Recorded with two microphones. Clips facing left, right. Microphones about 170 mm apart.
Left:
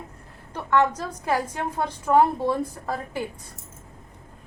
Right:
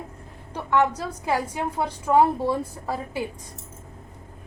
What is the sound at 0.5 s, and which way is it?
A woman's voice, 10° right (ahead or behind).